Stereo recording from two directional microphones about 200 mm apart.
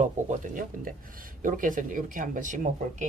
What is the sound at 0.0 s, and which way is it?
Speech, 40° right (ahead or behind).